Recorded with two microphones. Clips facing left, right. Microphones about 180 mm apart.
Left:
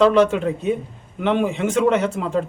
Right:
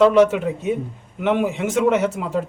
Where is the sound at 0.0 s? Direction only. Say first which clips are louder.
Right 1 dB; 10° right (ahead or behind).